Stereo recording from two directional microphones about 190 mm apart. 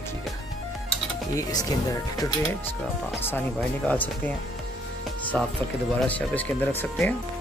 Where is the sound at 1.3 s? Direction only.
20° left (ahead or behind).